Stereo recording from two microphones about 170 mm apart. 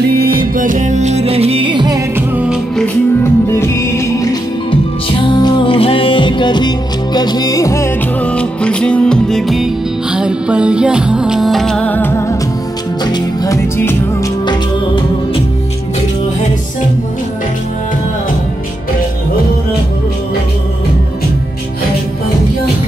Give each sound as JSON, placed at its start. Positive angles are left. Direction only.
{"t": 0.1, "sound": "music", "side_deg": -60}
{"t": 3.3, "sound": "music", "side_deg": 15}